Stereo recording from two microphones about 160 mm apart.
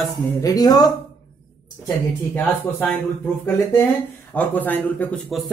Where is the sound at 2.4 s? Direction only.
10° left (ahead or behind).